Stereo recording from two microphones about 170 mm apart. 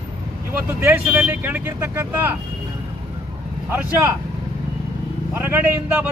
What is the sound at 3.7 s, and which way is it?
Speech, 15° right (ahead or behind).